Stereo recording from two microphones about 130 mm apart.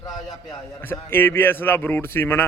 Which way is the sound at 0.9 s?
15° left (ahead or behind).